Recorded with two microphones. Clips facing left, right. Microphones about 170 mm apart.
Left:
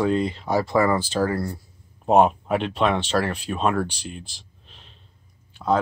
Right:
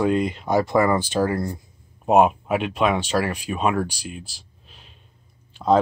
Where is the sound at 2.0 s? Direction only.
5° right (ahead or behind).